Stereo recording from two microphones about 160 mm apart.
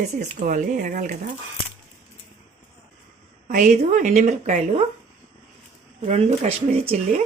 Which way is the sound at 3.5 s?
50° right (ahead or behind).